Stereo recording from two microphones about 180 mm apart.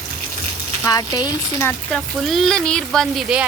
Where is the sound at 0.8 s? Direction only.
20° left (ahead or behind).